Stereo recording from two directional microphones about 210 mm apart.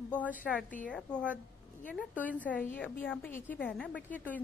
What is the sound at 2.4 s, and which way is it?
A woman's voice, 5° left (ahead or behind).